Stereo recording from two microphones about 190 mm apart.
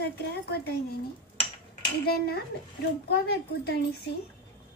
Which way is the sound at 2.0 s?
55° left (ahead or behind).